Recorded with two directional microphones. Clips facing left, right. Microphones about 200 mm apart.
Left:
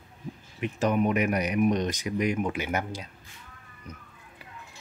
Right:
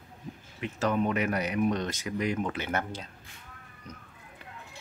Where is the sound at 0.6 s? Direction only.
15° left (ahead or behind).